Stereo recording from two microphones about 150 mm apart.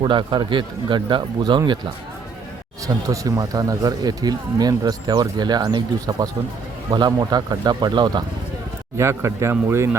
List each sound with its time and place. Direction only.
0.0 s speech: 30° right (ahead or behind)
2.8 s speech: 25° right (ahead or behind)
9.0 s speech: 20° right (ahead or behind)